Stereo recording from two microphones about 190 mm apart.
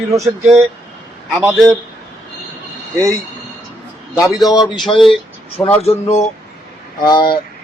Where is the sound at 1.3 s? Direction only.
Centre (ahead or behind).